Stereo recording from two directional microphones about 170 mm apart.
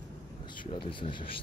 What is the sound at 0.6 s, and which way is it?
Speech, 30° left (ahead or behind).